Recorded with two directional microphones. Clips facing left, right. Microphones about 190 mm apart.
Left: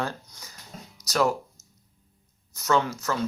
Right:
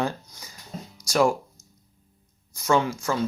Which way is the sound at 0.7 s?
30° right (ahead or behind).